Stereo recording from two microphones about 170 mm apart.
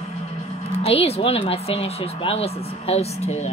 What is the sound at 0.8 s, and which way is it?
Speech, 35° left (ahead or behind).